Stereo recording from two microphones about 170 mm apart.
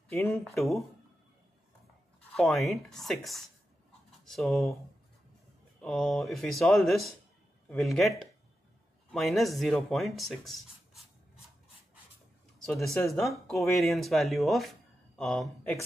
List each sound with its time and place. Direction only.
0.1 s speech: 15° left (ahead or behind)
2.3 s speech: centre (ahead or behind)
5.8 s speech: 5° left (ahead or behind)
9.1 s speech: centre (ahead or behind)
12.9 s speech: centre (ahead or behind)